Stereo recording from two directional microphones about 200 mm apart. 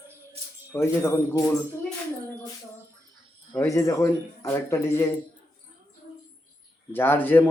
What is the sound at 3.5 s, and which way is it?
Speech, 15° left (ahead or behind).